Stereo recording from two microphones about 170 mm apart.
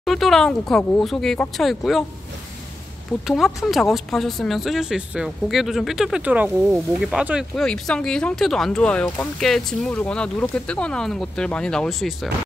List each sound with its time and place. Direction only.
0.0 s speech: centre (ahead or behind)
3.3 s speech: centre (ahead or behind)